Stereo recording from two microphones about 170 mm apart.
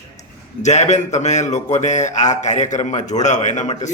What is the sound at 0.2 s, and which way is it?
Speech, 40° left (ahead or behind).